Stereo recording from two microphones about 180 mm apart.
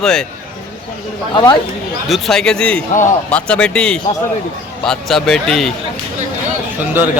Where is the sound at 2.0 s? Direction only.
Centre (ahead or behind).